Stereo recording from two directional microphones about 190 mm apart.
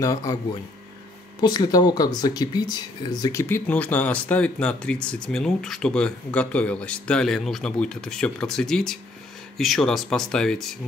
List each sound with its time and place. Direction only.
0.0 s speech: 20° left (ahead or behind)
1.4 s speech: 20° left (ahead or behind); by 10.8 s 5° left (ahead or behind)